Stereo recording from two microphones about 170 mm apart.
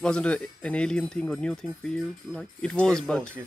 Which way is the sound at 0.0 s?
5° left (ahead or behind).